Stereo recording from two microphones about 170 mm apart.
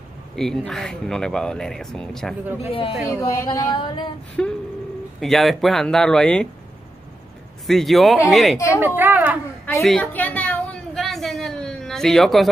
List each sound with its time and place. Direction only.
0.4 s speech: 5° left (ahead or behind)
2.4 s a woman's voice: 10° right (ahead or behind)
2.7 s speech: 30° left (ahead or behind)
3.1 s a sound: 15° left (ahead or behind)
4.4 s speech: 5° left (ahead or behind)
7.6 s speech: centre (ahead or behind)
8.7 s a woman's voice: 10° right (ahead or behind)
9.8 s a sound: centre (ahead or behind)